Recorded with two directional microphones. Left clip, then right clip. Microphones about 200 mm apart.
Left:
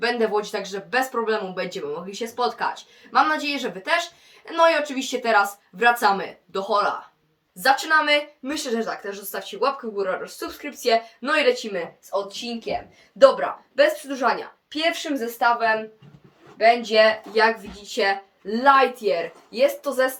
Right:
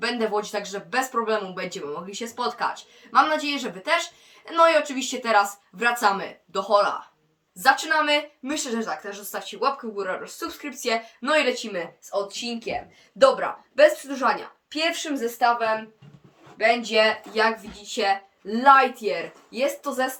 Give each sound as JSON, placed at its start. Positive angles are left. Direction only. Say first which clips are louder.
{"t": 0.0, "sound": "speech", "louder": "left 3 dB", "side_deg": -5}
{"t": 12.3, "sound": "a woman's voice", "louder": "even", "side_deg": -20}
{"t": 13.7, "sound": "a woman's voice", "louder": "right 2 dB", "side_deg": -10}
{"t": 15.4, "sound": "a woman's voice", "louder": "left 2 dB", "side_deg": -20}